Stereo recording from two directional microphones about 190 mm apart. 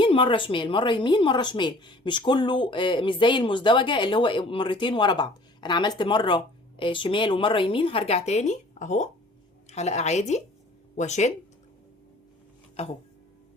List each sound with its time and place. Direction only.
0.0 s a woman's voice: 25° left (ahead or behind)
12.8 s a woman's voice: 30° left (ahead or behind)